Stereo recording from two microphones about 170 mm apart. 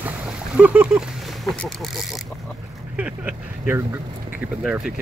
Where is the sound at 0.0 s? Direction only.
10° right (ahead or behind).